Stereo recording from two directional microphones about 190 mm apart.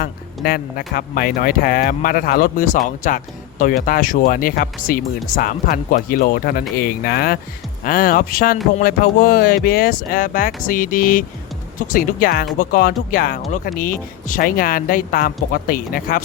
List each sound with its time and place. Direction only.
0.0 s speech: 55° left (ahead or behind)